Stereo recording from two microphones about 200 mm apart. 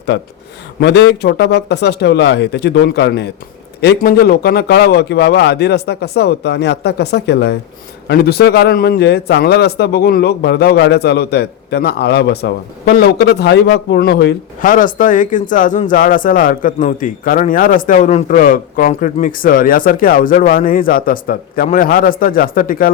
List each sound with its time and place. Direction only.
0.1 s a man's voice: 60° left (ahead or behind)
14.6 s speech: 40° left (ahead or behind)